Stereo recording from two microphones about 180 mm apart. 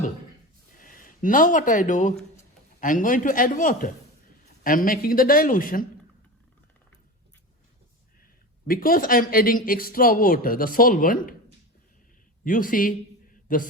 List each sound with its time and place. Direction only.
0.8 s speech: 50° left (ahead or behind)
8.6 s speech: 55° left (ahead or behind)